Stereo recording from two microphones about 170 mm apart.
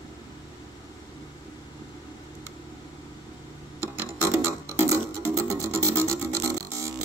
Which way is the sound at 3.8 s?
15° right (ahead or behind).